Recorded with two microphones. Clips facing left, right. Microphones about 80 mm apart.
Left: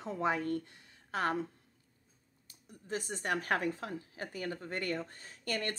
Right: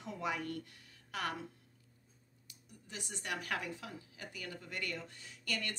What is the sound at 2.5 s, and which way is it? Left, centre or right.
A woman's voice, left.